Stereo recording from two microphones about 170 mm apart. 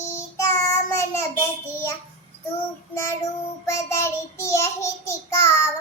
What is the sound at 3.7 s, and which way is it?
Child singing, 15° left (ahead or behind).